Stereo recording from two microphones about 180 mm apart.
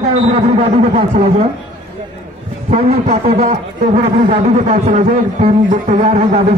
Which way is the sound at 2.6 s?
35° right (ahead or behind).